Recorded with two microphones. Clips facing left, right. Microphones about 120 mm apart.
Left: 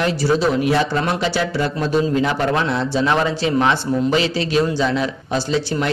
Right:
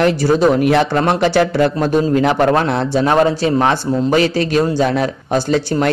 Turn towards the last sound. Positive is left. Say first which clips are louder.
# right 5 dB
turn(degrees=-50)  # may be behind; listen again after turning